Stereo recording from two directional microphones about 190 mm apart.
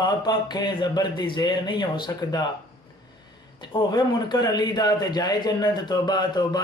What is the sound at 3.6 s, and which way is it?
A man's voice, 25° left (ahead or behind).